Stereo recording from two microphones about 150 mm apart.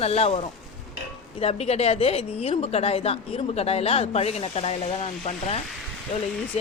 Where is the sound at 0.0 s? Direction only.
45° left (ahead or behind).